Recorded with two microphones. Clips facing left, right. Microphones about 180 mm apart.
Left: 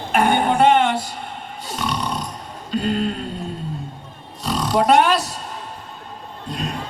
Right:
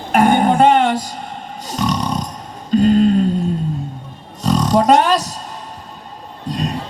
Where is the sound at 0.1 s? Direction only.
40° right (ahead or behind).